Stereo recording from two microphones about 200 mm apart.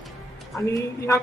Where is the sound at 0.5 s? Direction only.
15° left (ahead or behind).